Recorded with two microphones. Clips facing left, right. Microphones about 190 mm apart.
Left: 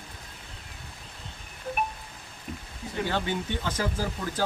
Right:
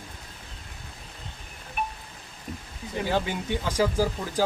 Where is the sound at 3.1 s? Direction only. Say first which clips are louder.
Right 5 dB; 10° right (ahead or behind).